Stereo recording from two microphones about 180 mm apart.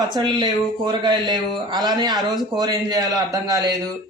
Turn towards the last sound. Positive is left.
turn(degrees=-20)  # may be behind; listen again after turning